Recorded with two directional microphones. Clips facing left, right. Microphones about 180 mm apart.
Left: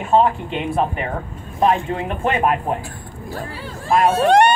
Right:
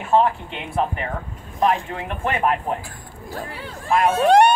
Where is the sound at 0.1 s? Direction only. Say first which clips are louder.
Left 2 dB; 15° left (ahead or behind).